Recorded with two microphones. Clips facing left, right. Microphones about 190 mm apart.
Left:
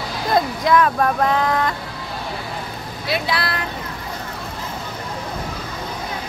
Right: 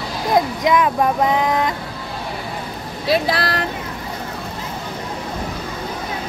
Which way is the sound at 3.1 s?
40° right (ahead or behind).